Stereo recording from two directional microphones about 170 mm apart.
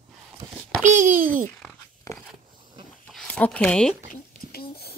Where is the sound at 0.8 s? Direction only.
50° right (ahead or behind).